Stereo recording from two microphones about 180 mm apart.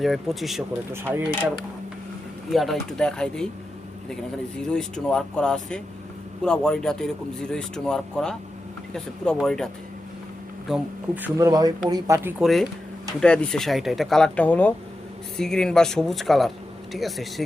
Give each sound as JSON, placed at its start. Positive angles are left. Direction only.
{"t": 0.0, "sound": "speech", "side_deg": 0}
{"t": 2.5, "sound": "speech", "side_deg": 0}
{"t": 10.7, "sound": "speech", "side_deg": -10}
{"t": 12.4, "sound": "speech", "side_deg": 0}